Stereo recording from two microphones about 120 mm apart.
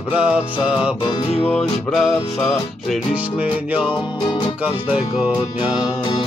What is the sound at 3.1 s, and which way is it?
Music, 10° right (ahead or behind).